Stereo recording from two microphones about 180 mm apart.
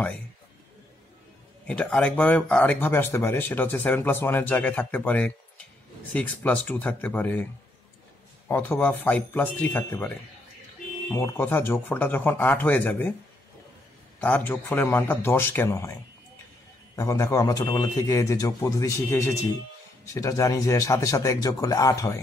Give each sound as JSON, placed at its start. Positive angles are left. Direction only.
{"t": 1.7, "sound": "speech", "side_deg": 5}
{"t": 8.5, "sound": "speech", "side_deg": 10}
{"t": 14.2, "sound": "speech", "side_deg": 10}
{"t": 16.9, "sound": "a man's voice", "side_deg": 20}